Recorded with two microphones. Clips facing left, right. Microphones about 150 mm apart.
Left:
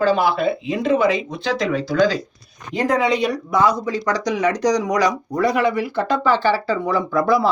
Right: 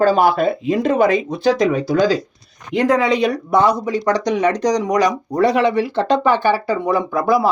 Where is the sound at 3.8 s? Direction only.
25° right (ahead or behind).